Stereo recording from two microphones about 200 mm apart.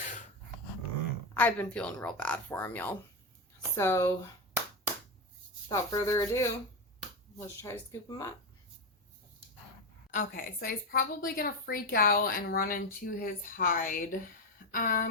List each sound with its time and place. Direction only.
1.3 s speech: 10° left (ahead or behind)
5.6 s speech: 15° left (ahead or behind)
10.1 s a woman's voice: 45° left (ahead or behind)